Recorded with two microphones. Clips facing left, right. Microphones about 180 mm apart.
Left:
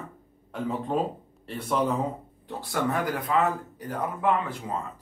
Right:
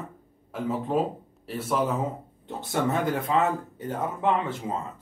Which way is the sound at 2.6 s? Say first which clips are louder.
Right 2 dB; 25° right (ahead or behind).